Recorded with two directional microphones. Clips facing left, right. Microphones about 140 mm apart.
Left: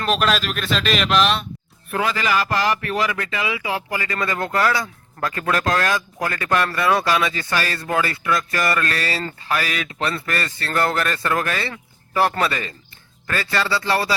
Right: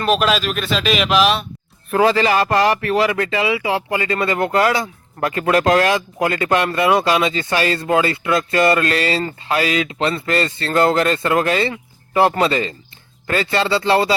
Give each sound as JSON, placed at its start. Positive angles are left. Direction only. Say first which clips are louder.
{"t": 0.0, "sound": "speech", "louder": "right 3 dB", "side_deg": 0}
{"t": 1.9, "sound": "speech", "louder": "right 7 dB", "side_deg": -30}